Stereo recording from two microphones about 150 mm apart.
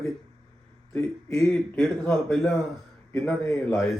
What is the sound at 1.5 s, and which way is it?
A man's voice, 5° left (ahead or behind).